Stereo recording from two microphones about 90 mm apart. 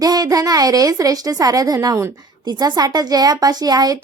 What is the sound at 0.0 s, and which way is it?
Speech, 45° right (ahead or behind).